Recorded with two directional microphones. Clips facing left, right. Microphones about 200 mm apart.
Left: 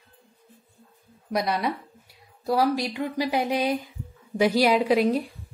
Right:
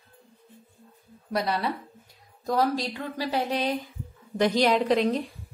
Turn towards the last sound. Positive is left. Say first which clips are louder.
# left 2 dB
turn(degrees=10)  # may be behind; listen again after turning